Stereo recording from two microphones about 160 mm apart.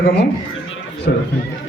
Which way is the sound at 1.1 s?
85° left.